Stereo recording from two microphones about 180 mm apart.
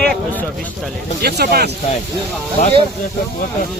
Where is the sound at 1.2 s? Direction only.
60° right (ahead or behind).